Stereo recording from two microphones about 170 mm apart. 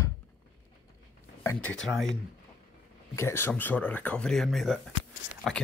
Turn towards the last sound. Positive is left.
turn(degrees=0)  # may be behind; listen again after turning